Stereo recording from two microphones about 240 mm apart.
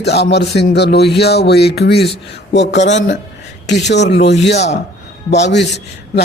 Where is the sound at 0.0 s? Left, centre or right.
Left.